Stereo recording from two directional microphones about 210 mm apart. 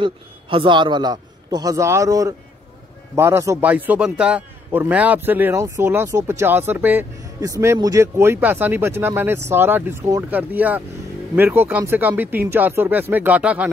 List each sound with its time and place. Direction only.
0.0 s a man's voice: 25° right (ahead or behind); by 13.7 s 5° right (ahead or behind)